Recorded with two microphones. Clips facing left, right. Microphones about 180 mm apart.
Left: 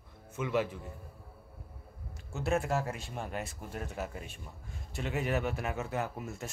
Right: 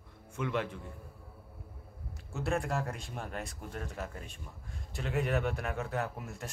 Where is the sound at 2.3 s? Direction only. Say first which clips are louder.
Left 2 dB; 5° left (ahead or behind).